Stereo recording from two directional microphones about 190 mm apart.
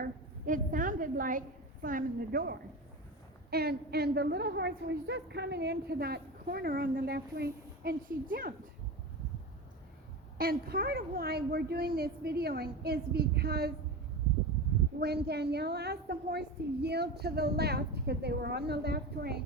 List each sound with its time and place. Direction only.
0.0 s a woman's voice: 45° right (ahead or behind)
10.3 s a woman's voice: 50° right (ahead or behind)
14.9 s a woman's voice: 60° right (ahead or behind)